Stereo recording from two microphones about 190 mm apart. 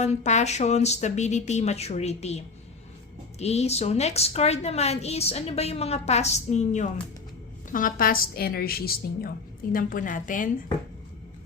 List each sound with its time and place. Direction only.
0.0 s a woman's voice: 35° left (ahead or behind)